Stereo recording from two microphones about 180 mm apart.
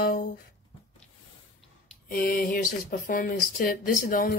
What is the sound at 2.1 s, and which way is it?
Speech, 55° left (ahead or behind).